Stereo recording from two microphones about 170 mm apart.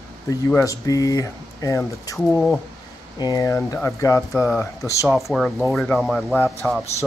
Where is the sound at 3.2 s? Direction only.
20° left (ahead or behind).